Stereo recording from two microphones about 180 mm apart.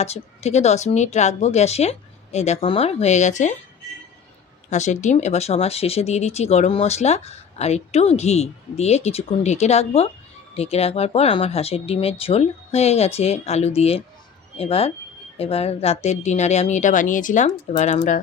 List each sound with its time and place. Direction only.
0.0 s speech: 35° left (ahead or behind)
4.7 s speech: 40° left (ahead or behind)